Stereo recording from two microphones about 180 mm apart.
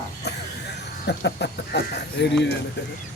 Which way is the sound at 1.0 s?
70° left (ahead or behind).